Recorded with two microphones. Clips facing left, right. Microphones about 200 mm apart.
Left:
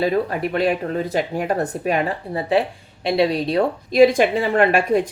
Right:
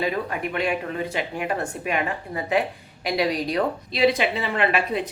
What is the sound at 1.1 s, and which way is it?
A woman's voice, 40° left (ahead or behind).